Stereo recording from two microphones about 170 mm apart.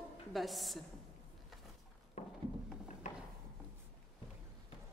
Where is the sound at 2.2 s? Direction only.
40° left (ahead or behind).